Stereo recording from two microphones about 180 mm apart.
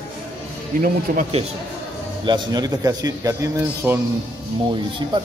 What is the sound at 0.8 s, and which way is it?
Speech, 45° right (ahead or behind).